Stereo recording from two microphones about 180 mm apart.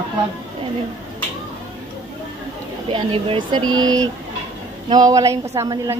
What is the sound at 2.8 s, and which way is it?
A woman's voice, 30° right (ahead or behind).